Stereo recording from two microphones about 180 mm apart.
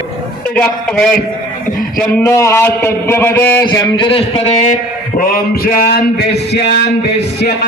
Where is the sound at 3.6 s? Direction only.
25° left (ahead or behind).